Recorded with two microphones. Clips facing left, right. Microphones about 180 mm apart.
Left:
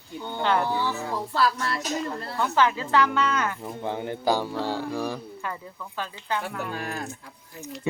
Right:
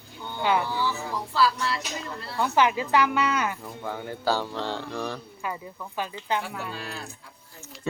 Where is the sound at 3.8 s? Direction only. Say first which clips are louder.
Left 2 dB; 25° left (ahead or behind).